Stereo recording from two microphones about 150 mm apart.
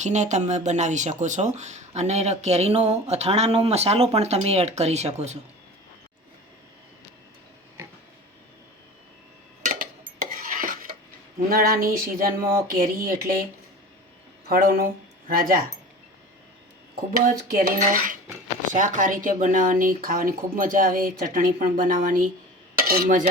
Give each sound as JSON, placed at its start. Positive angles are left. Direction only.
{"t": 0.0, "sound": "speech", "side_deg": -50}
{"t": 9.6, "sound": "a sound", "side_deg": -70}
{"t": 10.2, "sound": "cutlery", "side_deg": -65}
{"t": 14.4, "sound": "speech", "side_deg": -80}
{"t": 15.3, "sound": "cutlery", "side_deg": -75}
{"t": 16.9, "sound": "cutlery", "side_deg": -75}
{"t": 18.7, "sound": "speech", "side_deg": -60}
{"t": 22.8, "sound": "cutlery", "side_deg": -80}